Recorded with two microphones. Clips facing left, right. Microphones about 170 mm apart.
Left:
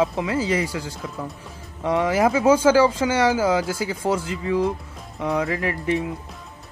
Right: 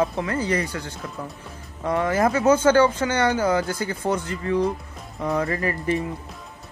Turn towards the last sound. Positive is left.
turn(degrees=5)  # may be behind; listen again after turning